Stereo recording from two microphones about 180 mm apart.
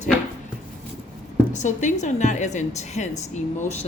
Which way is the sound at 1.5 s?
40° left (ahead or behind).